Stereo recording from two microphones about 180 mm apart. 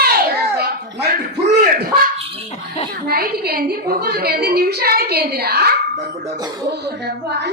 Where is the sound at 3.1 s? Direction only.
55° right (ahead or behind).